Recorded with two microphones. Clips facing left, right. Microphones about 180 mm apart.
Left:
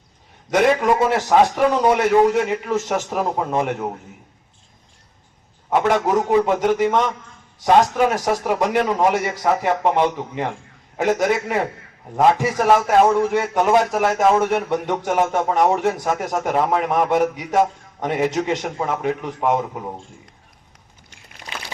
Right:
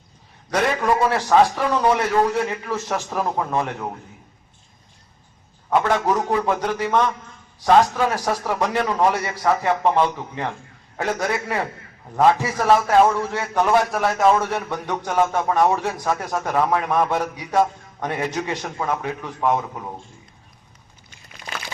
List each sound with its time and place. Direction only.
0.5 s a man's voice: 20° left (ahead or behind)
5.8 s a man's voice: 20° left (ahead or behind)